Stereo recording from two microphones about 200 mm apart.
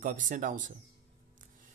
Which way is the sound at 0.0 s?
40° right (ahead or behind).